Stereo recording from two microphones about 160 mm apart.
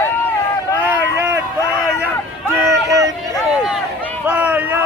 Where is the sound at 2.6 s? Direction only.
20° right (ahead or behind).